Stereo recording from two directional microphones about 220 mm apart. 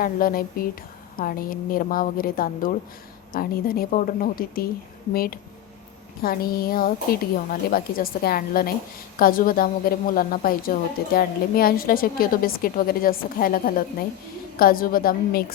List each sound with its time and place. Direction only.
0.0 s a woman's voice: 40° left (ahead or behind)